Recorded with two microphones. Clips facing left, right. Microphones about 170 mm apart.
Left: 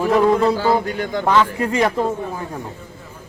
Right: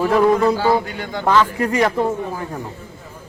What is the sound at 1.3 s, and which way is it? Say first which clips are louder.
Speech: right 2 dB; 20° left (ahead or behind).